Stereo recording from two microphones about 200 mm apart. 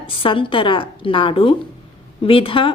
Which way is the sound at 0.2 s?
25° left (ahead or behind).